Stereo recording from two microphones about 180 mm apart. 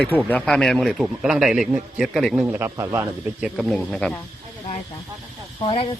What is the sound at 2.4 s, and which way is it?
Speech, 15° right (ahead or behind).